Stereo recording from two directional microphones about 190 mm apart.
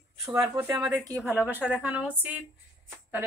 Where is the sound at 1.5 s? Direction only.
10° right (ahead or behind).